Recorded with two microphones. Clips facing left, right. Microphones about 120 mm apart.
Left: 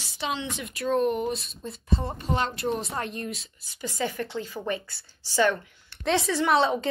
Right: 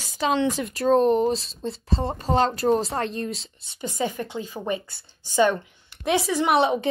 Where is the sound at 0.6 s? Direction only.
35° right (ahead or behind).